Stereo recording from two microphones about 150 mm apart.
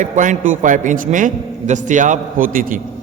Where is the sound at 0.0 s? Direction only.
60° right (ahead or behind).